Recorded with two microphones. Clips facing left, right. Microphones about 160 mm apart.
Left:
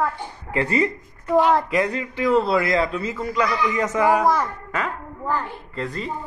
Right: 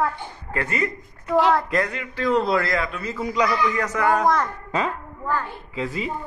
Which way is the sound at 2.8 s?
30° left (ahead or behind).